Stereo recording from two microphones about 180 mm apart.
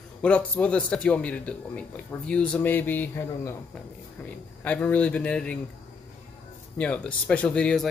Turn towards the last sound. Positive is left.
turn(degrees=5)  # may be behind; listen again after turning